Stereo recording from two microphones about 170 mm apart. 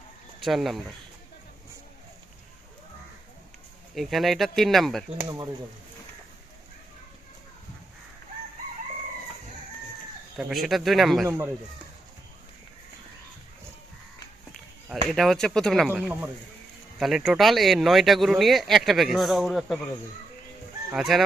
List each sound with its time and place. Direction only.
0.3 s speech: centre (ahead or behind)
3.9 s speech: centre (ahead or behind)
5.1 s speech: 20° right (ahead or behind)
10.3 s speech: centre (ahead or behind)
11.3 s a man's voice: 15° right (ahead or behind)
14.8 s a man's voice: centre (ahead or behind)
20.9 s speech: centre (ahead or behind)